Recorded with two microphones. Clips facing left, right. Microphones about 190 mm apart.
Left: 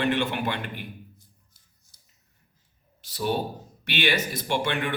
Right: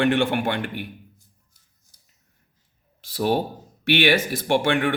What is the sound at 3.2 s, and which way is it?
Speech, 70° right (ahead or behind).